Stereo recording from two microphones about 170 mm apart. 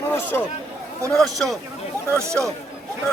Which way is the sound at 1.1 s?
Centre (ahead or behind).